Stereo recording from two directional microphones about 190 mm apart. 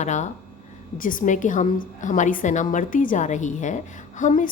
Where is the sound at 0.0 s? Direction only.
40° left (ahead or behind).